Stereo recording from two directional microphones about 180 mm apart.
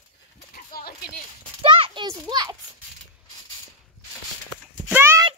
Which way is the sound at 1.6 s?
30° right (ahead or behind).